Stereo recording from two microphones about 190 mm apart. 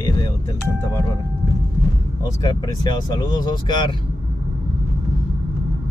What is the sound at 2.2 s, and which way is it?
Speech, 20° left (ahead or behind).